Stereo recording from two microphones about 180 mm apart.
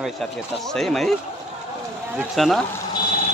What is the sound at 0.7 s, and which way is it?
Speech, centre (ahead or behind).